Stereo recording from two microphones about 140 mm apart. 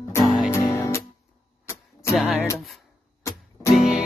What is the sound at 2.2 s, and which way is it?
Music, centre (ahead or behind).